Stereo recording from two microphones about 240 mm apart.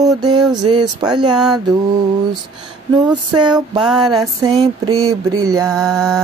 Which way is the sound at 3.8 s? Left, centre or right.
Centre.